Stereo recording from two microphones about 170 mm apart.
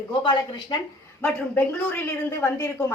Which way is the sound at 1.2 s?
10° left (ahead or behind).